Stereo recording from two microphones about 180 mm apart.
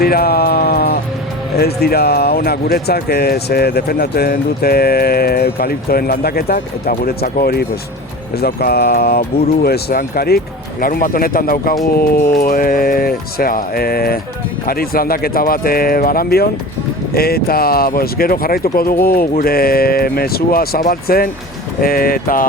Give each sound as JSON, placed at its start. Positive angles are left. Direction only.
{"t": 0.0, "sound": "music", "side_deg": 60}
{"t": 1.5, "sound": "speech", "side_deg": 60}